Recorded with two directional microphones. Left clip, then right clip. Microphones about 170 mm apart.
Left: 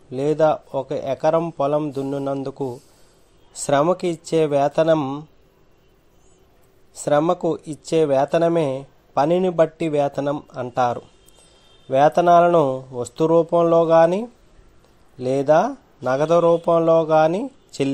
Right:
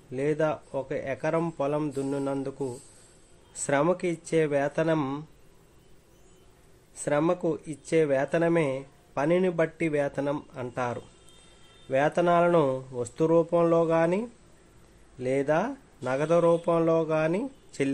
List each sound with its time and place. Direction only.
0.1 s speech: 25° left (ahead or behind)
7.1 s speech: 25° left (ahead or behind)
12.2 s speech: 25° left (ahead or behind)